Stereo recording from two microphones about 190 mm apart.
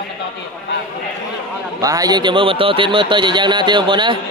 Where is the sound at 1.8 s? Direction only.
20° right (ahead or behind).